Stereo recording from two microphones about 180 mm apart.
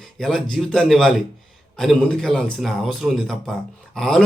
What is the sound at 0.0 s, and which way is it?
A man's voice, 5° left (ahead or behind).